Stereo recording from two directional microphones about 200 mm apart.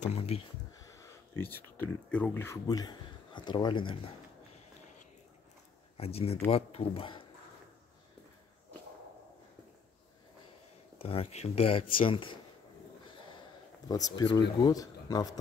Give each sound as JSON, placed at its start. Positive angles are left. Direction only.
{"t": 0.0, "sound": "speech", "side_deg": 30}
{"t": 0.9, "sound": "speech", "side_deg": 10}
{"t": 5.9, "sound": "speech", "side_deg": 30}
{"t": 11.0, "sound": "speech", "side_deg": 30}
{"t": 13.8, "sound": "speech", "side_deg": 20}